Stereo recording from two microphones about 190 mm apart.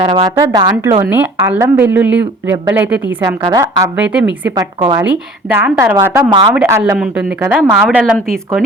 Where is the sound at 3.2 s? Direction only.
20° right (ahead or behind).